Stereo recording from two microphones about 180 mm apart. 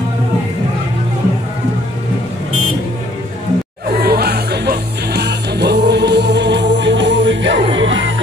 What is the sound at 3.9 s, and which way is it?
Music, 60° right (ahead or behind).